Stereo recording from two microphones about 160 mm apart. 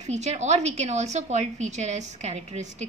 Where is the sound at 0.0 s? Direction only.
45° right (ahead or behind).